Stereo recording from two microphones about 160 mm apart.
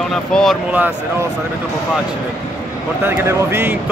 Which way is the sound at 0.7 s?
10° right (ahead or behind).